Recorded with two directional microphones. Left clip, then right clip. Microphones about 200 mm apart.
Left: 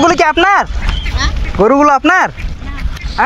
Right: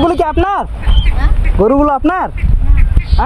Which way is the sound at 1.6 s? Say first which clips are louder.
Left 2 dB; 15° left (ahead or behind).